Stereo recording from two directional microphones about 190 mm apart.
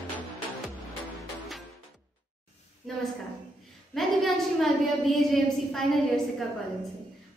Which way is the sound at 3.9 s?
Centre (ahead or behind).